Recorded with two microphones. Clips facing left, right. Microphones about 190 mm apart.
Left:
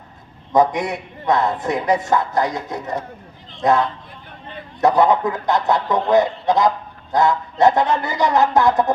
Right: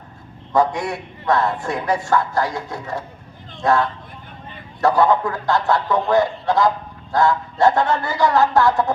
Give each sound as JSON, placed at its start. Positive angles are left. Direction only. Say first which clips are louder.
{"t": 0.5, "sound": "a man's voice", "louder": "left 2 dB", "side_deg": 20}